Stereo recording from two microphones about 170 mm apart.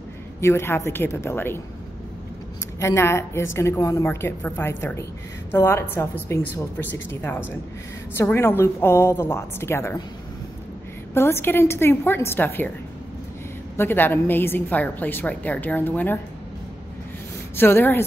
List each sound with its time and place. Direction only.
0.4 s a woman's voice: 15° left (ahead or behind)
2.8 s a woman's voice: 15° left (ahead or behind)
11.1 s a woman's voice: 15° left (ahead or behind)
13.7 s a woman's voice: 10° left (ahead or behind)
17.6 s a woman's voice: 15° left (ahead or behind)